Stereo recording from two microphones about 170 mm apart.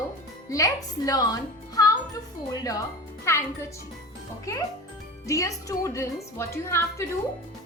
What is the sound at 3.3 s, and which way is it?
Speech, 15° left (ahead or behind).